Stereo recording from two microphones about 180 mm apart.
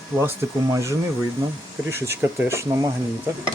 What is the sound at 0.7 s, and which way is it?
Speech, 15° right (ahead or behind).